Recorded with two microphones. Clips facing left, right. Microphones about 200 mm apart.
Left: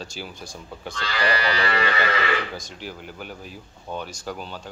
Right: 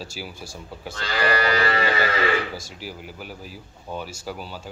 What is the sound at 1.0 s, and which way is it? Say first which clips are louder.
Livestock: right 2 dB; 45° right (ahead or behind).